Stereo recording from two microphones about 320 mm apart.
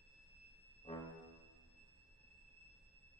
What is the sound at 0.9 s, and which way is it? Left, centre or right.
Music, centre.